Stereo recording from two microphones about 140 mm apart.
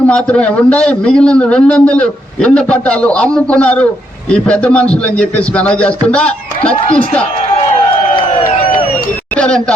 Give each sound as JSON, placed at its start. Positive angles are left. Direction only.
{"t": 0.1, "sound": "a man's voice", "side_deg": 10}
{"t": 8.1, "sound": "a sound", "side_deg": 40}
{"t": 9.4, "sound": "a man's voice", "side_deg": 5}